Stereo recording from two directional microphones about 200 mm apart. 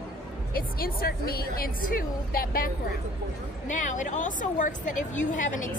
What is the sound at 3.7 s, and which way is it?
A woman's voice, 40° left (ahead or behind).